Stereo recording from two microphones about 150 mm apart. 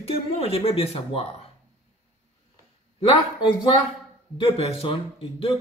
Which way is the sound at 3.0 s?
35° left (ahead or behind).